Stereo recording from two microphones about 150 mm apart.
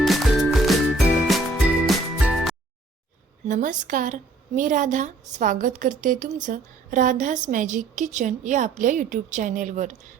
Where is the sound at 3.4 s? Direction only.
60° right (ahead or behind).